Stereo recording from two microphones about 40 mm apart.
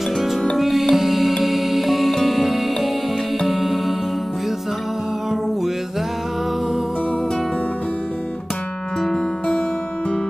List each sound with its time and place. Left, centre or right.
0.6 s music: centre
9.0 s music: centre